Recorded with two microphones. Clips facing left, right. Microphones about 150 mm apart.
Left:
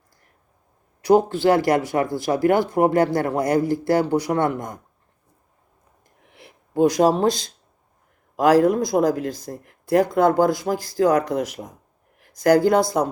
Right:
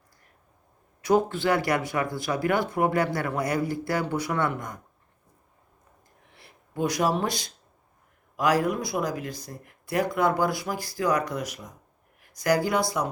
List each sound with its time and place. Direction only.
1.0 s speech: 35° left (ahead or behind)
6.7 s speech: 45° left (ahead or behind)
8.4 s speech: 50° left (ahead or behind)